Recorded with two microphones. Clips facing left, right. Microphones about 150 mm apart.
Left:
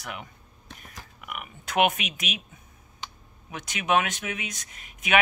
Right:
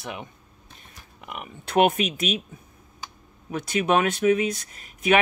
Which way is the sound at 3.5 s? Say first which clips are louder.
Right 3 dB; 35° right (ahead or behind).